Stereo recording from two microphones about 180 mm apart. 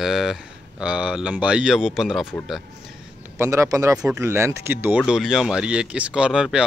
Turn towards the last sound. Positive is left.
turn(degrees=-5)  # may be behind; listen again after turning